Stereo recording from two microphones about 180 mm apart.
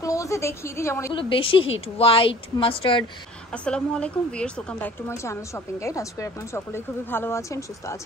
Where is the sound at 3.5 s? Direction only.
5° left (ahead or behind).